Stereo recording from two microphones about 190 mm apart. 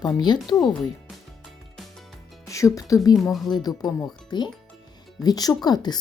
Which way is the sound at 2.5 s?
15° left (ahead or behind).